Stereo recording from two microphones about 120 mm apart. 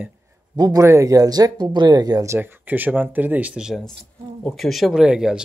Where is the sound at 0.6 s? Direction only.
30° right (ahead or behind).